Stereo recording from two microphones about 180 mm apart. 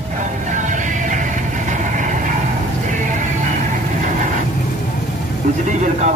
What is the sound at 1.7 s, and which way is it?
Vehicle, 45° right (ahead or behind).